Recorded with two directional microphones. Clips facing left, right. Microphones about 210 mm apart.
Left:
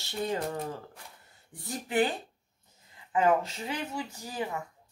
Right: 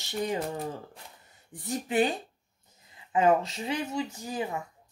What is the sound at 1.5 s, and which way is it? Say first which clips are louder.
Speech: right 3 dB; 20° right (ahead or behind).